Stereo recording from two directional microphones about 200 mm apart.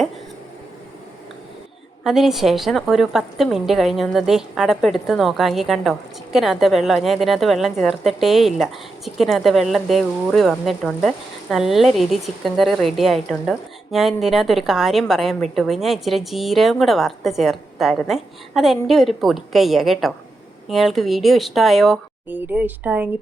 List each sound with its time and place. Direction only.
2.0 s a woman's voice: centre (ahead or behind)